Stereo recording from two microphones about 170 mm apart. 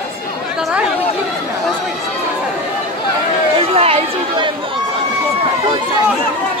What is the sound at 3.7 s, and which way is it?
Chatter, 35° right (ahead or behind).